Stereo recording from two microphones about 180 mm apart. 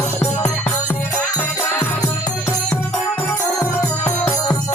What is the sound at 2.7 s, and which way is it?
Music, 5° left (ahead or behind).